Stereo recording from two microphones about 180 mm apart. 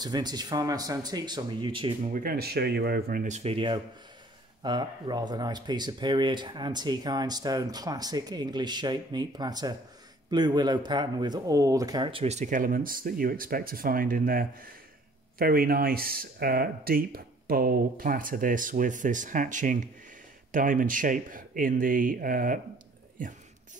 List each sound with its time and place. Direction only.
0.0 s speech: 25° right (ahead or behind)
2.0 s speech: 50° right (ahead or behind)